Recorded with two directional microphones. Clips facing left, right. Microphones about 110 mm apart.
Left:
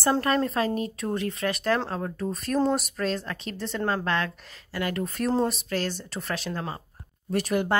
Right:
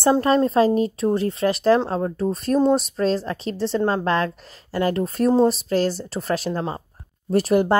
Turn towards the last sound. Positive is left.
turn(degrees=-35)  # may be behind; listen again after turning